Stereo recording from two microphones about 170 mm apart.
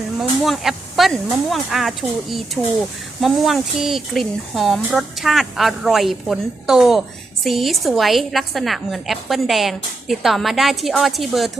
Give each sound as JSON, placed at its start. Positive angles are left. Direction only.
{"t": 0.2, "sound": "a woman's voice", "side_deg": 0}